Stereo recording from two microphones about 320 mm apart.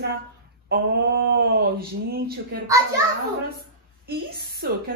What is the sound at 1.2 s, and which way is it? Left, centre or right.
Speech, right.